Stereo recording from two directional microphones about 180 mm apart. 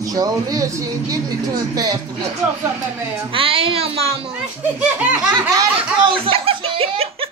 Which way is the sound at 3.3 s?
30° right (ahead or behind).